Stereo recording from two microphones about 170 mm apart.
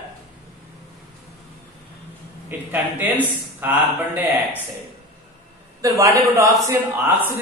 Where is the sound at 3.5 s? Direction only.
10° right (ahead or behind).